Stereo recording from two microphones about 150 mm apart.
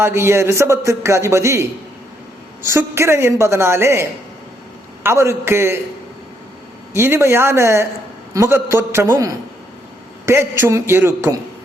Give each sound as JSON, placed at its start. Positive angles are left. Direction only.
{"t": 0.0, "sound": "a man's voice", "side_deg": -15}
{"t": 5.0, "sound": "a man's voice", "side_deg": -20}
{"t": 6.9, "sound": "a man's voice", "side_deg": -15}